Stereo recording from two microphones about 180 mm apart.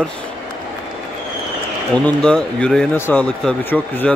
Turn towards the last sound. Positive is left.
turn(degrees=5)  # may be behind; listen again after turning